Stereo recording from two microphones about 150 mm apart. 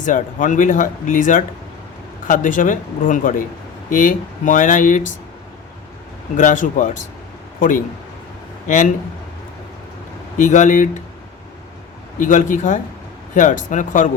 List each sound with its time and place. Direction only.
0.0 s speech: 55° left (ahead or behind)
6.3 s speech: 55° left (ahead or behind)
8.6 s a man's voice: 60° left (ahead or behind)
10.3 s speech: 55° left (ahead or behind)
12.2 s speech: 60° left (ahead or behind)